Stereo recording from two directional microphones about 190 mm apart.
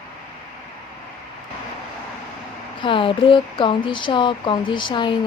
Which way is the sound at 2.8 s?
25° left (ahead or behind).